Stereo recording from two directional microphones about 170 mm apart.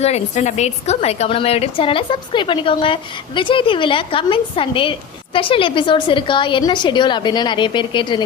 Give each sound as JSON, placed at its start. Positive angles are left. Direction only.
{"t": 0.0, "sound": "a woman's voice", "side_deg": 40}